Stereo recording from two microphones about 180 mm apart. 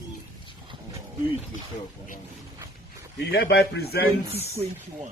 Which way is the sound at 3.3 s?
65° left (ahead or behind).